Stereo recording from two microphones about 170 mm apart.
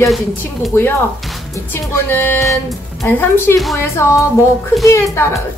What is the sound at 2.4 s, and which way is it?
Music, centre (ahead or behind).